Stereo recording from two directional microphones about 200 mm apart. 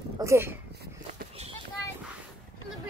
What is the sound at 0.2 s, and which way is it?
Speech, 15° right (ahead or behind).